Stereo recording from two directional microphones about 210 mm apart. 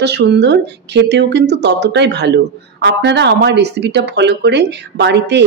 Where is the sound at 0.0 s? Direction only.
55° right (ahead or behind).